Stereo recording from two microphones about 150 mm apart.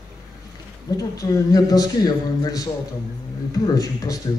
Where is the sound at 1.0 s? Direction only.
25° left (ahead or behind).